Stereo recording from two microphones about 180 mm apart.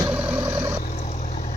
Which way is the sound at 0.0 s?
10° right (ahead or behind).